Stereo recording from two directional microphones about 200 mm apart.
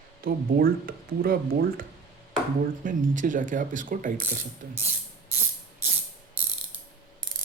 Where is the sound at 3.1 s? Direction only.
40° right (ahead or behind).